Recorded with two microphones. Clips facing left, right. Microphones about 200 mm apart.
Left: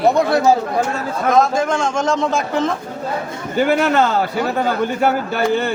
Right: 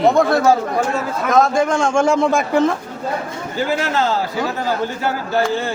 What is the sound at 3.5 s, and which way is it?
Speech, 60° left (ahead or behind).